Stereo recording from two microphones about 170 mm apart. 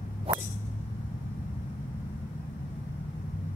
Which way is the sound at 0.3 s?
35° right (ahead or behind).